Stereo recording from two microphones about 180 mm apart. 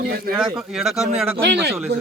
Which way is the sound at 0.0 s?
60° right (ahead or behind).